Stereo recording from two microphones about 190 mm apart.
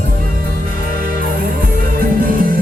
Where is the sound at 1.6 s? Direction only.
50° right (ahead or behind).